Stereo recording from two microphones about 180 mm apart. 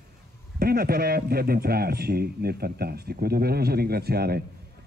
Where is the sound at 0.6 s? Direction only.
55° right (ahead or behind).